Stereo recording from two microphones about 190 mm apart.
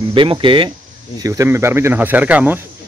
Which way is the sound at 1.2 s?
15° right (ahead or behind).